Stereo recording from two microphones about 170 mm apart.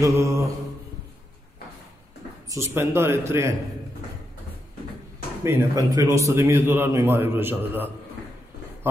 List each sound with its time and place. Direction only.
0.0 s a man's voice: 20° right (ahead or behind)
2.5 s a man's voice: 15° right (ahead or behind)
5.4 s a man's voice: 20° right (ahead or behind)